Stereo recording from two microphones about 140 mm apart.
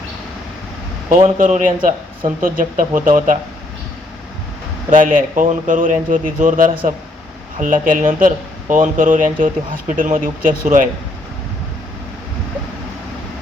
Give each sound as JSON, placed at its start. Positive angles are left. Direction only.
{"t": 1.1, "sound": "speech", "side_deg": -60}
{"t": 4.9, "sound": "speech", "side_deg": -70}